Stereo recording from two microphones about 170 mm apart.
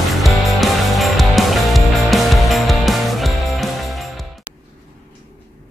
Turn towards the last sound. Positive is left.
turn(degrees=0)  # may be behind; listen again after turning